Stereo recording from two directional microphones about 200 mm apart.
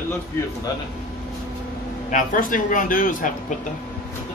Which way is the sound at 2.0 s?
40° left (ahead or behind).